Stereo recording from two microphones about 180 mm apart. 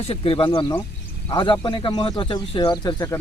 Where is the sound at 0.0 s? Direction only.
30° left (ahead or behind).